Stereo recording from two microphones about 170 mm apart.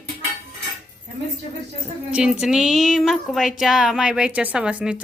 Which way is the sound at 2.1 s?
5° right (ahead or behind).